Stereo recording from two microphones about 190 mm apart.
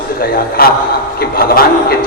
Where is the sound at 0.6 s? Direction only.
50° left (ahead or behind).